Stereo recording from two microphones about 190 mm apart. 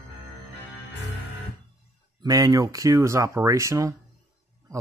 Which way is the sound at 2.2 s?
15° right (ahead or behind).